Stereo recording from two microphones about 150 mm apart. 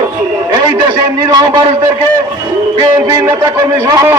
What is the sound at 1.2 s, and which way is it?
Speech, 30° right (ahead or behind).